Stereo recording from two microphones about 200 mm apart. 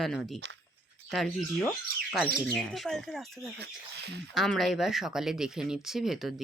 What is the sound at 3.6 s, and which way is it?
Speech, 55° right (ahead or behind).